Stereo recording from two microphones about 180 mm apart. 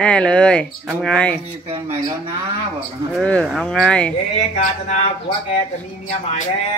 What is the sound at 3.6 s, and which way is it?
Speech, 5° left (ahead or behind).